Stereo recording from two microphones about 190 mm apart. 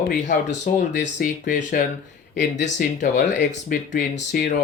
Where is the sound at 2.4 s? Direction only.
70° left (ahead or behind).